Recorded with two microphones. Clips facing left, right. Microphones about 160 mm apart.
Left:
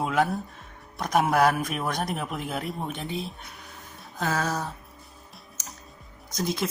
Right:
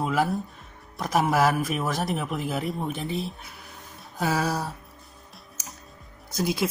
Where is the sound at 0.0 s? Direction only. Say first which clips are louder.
Even; centre (ahead or behind).